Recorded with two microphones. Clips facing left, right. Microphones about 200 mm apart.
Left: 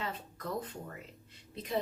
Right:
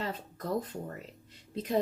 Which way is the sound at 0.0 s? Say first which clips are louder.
Right 3 dB; 40° right (ahead or behind).